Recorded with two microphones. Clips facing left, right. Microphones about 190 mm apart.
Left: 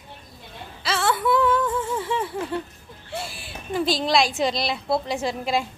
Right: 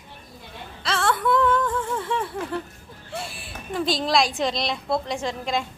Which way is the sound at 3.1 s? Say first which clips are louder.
Left 1 dB; centre (ahead or behind).